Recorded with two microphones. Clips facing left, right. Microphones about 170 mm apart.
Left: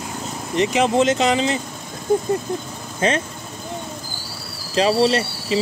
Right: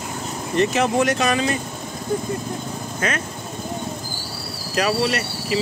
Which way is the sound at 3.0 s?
25° left (ahead or behind).